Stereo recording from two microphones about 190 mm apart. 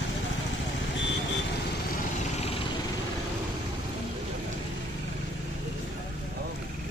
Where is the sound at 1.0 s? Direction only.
70° left (ahead or behind).